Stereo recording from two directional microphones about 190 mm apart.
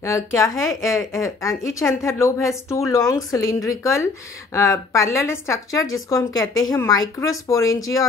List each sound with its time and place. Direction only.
0.0 s a woman's voice: 15° left (ahead or behind)